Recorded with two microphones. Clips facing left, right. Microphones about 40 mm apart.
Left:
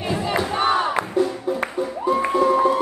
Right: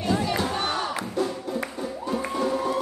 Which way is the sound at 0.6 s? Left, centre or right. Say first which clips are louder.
Left 8 dB; left.